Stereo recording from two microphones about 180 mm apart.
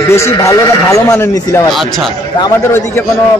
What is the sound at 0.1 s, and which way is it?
Speech, 15° left (ahead or behind).